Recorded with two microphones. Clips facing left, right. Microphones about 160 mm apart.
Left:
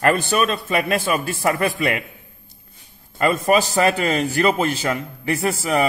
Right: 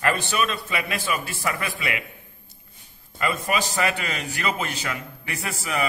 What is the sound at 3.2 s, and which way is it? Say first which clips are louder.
A man's voice: left 8 dB; 40° left (ahead or behind).